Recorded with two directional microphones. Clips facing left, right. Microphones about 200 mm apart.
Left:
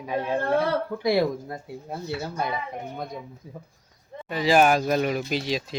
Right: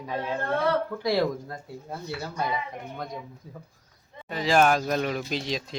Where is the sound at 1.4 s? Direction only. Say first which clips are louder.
Left 3 dB; 20° left (ahead or behind).